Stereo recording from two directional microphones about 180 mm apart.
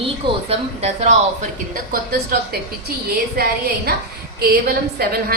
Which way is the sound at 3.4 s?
60° right (ahead or behind).